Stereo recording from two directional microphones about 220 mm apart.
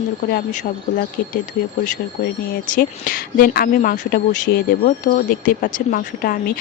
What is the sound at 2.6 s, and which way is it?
Speech, 40° left (ahead or behind).